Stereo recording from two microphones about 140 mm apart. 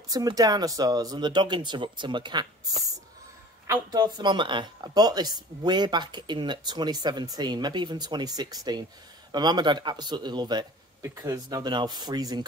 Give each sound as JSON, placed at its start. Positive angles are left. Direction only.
{"t": 0.1, "sound": "speech", "side_deg": -25}
{"t": 3.9, "sound": "speech", "side_deg": -30}